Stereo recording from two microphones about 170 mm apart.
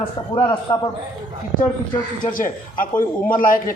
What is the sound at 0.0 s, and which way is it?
Speech, 30° left (ahead or behind).